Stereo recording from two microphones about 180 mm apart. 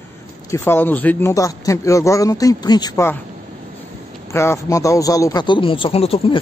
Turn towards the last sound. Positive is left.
turn(degrees=30)  # may be behind; listen again after turning